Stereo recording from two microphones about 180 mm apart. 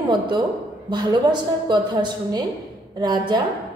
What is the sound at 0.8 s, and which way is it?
A woman's voice, 25° right (ahead or behind).